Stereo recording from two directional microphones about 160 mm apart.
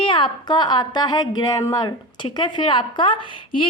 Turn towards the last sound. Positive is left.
turn(degrees=30)  # may be behind; listen again after turning